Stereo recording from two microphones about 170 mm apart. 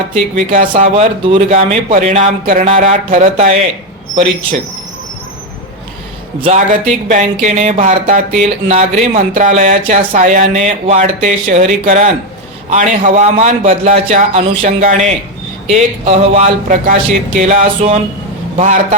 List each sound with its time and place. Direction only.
0.1 s speech: 50° right (ahead or behind)
6.4 s speech: 45° right (ahead or behind)
15.7 s speech: 40° right (ahead or behind)